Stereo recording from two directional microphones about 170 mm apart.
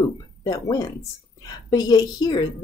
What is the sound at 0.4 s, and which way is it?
Speech, 20° left (ahead or behind).